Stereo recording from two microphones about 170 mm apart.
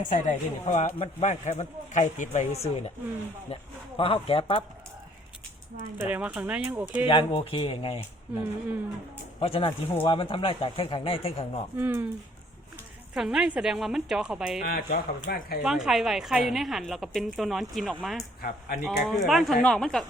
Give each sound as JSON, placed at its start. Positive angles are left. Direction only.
{"t": 0.0, "sound": "a man's voice", "side_deg": 45}
{"t": 6.0, "sound": "speech", "side_deg": -10}
{"t": 7.1, "sound": "speech", "side_deg": 30}
{"t": 9.4, "sound": "speech", "side_deg": 30}
{"t": 11.8, "sound": "speech", "side_deg": -15}
{"t": 13.1, "sound": "a woman's voice", "side_deg": -5}
{"t": 14.6, "sound": "speech", "side_deg": 55}
{"t": 15.6, "sound": "a woman's voice", "side_deg": -5}